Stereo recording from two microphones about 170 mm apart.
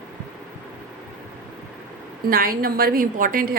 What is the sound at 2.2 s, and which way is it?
A woman's voice, 60° right (ahead or behind).